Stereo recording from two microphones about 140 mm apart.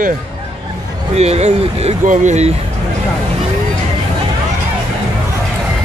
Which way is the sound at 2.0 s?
60° right (ahead or behind).